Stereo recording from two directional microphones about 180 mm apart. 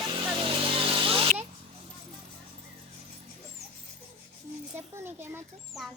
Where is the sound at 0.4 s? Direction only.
30° right (ahead or behind).